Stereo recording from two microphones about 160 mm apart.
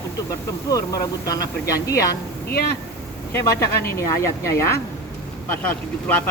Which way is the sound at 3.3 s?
15° left (ahead or behind).